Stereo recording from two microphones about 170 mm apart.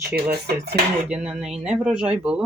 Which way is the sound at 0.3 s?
70° right (ahead or behind).